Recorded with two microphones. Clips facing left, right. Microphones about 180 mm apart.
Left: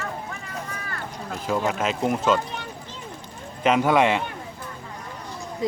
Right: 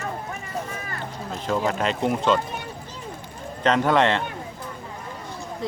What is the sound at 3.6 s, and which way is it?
Speech, 10° left (ahead or behind).